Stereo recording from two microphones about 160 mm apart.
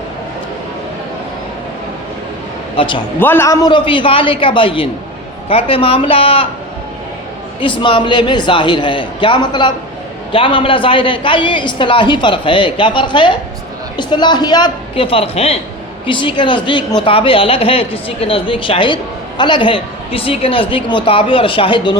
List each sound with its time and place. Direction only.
2.7 s a man's voice: 30° left (ahead or behind)
3.2 s a woman's voice: 15° left (ahead or behind); by 6.5 s 35° left (ahead or behind)
7.6 s a woman's voice: 30° left (ahead or behind)